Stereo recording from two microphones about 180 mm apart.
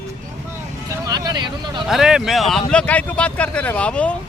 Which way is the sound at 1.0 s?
20° right (ahead or behind).